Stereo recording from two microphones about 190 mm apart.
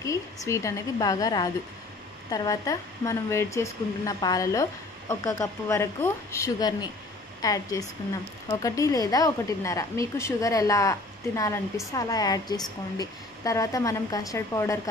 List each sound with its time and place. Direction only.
0.0 s a woman's voice: 15° left (ahead or behind)